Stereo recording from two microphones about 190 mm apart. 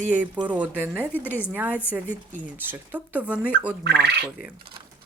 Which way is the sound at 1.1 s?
10° left (ahead or behind).